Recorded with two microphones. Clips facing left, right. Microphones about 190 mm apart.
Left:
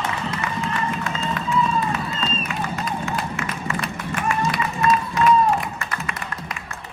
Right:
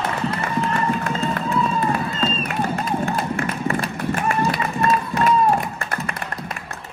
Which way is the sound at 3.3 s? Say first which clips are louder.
Right 5 dB; 55° right (ahead or behind).